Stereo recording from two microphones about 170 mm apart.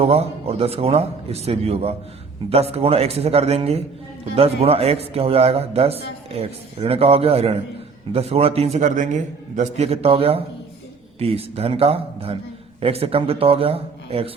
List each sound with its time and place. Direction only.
0.0 s a man's voice: 35° right (ahead or behind)